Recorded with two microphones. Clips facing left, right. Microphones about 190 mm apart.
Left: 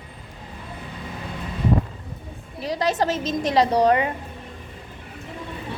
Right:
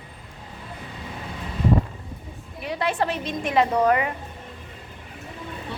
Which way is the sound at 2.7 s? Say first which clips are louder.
Left 3 dB; 40° left (ahead or behind).